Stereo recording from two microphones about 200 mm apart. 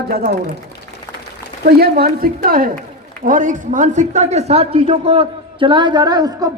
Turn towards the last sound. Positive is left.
turn(degrees=-20)  # may be behind; listen again after turning